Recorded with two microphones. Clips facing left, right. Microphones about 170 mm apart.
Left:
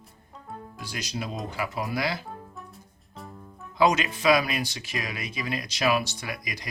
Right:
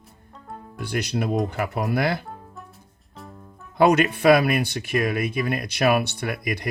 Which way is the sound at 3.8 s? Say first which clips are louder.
Right 5 dB; 55° right (ahead or behind).